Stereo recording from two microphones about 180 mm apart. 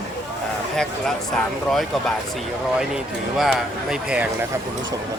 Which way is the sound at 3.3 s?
Centre (ahead or behind).